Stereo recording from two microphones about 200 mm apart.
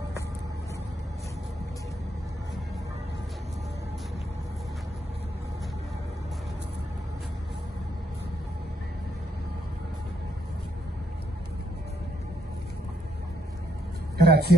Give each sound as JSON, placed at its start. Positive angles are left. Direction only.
{"t": 14.1, "sound": "speech", "side_deg": -50}